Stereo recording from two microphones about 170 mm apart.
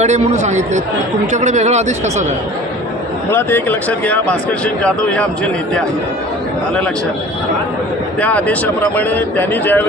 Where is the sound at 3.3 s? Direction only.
15° left (ahead or behind).